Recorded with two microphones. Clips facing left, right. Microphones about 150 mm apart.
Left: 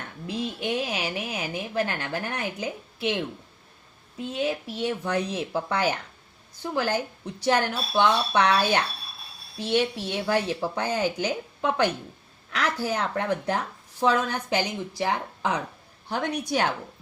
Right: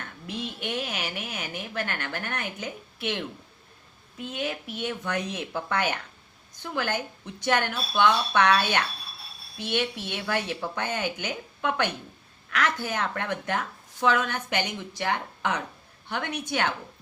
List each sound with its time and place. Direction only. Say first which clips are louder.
0.3 s speech: left 4 dB; 35° left (ahead or behind)